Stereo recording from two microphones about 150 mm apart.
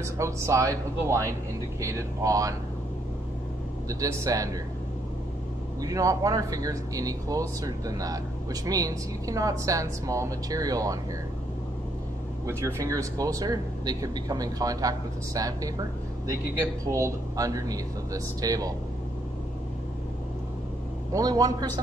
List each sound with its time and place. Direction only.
0.0 s speech: 20° right (ahead or behind)
4.0 s speech: 25° right (ahead or behind)
5.8 s speech: 25° right (ahead or behind)
12.4 s speech: 20° right (ahead or behind)
21.1 s speech: 25° right (ahead or behind)